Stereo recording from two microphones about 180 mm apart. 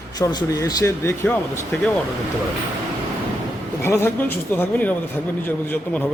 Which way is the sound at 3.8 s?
15° left (ahead or behind).